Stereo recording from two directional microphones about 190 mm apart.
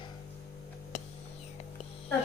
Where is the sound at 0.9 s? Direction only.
35° left (ahead or behind).